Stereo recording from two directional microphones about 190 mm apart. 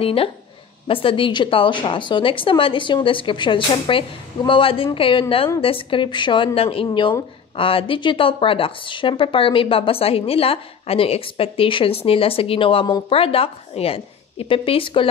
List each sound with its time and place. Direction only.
0.0 s speech: 30° left (ahead or behind)